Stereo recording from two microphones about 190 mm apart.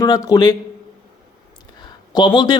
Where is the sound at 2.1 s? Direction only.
25° left (ahead or behind).